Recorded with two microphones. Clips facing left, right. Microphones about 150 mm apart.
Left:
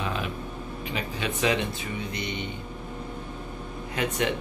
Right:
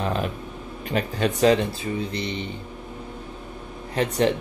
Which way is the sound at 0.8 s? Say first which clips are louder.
Right 8 dB; 45° right (ahead or behind).